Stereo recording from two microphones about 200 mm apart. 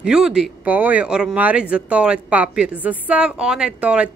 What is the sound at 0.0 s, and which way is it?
Speech, 5° right (ahead or behind).